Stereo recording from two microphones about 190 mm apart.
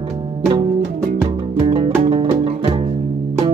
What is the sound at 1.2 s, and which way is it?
Music, 20° right (ahead or behind).